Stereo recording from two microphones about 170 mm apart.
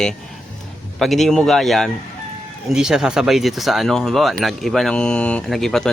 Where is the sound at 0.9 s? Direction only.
Centre (ahead or behind).